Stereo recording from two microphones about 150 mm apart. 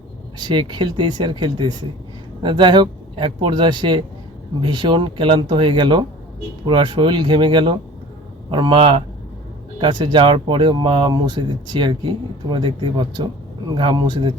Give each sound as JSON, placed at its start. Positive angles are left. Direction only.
{"t": 0.3, "sound": "speech", "side_deg": -30}